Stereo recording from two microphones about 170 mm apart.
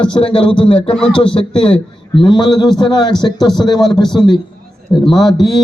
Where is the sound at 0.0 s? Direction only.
30° left (ahead or behind).